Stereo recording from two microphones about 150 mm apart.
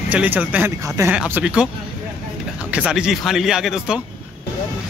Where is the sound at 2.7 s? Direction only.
5° right (ahead or behind).